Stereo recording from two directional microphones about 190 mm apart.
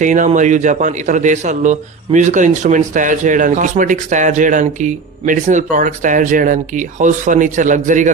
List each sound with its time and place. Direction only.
0.0 s a man's voice: 40° right (ahead or behind)